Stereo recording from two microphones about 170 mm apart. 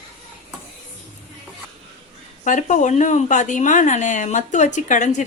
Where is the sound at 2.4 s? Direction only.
45° left (ahead or behind).